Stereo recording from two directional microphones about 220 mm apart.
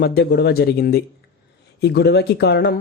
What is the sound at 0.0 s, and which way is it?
Speech, 45° left (ahead or behind).